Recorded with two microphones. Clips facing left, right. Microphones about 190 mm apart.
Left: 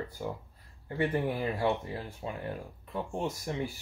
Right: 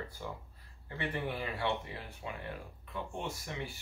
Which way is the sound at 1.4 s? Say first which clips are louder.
Left 6 dB; 35° left (ahead or behind).